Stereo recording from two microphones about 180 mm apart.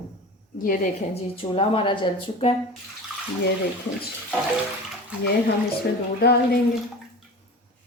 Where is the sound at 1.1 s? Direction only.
30° left (ahead or behind).